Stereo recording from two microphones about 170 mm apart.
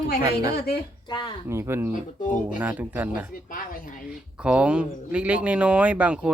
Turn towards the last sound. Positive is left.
turn(degrees=-5)  # may be behind; listen again after turning